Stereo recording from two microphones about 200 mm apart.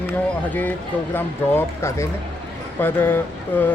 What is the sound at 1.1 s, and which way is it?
Speech, 10° left (ahead or behind).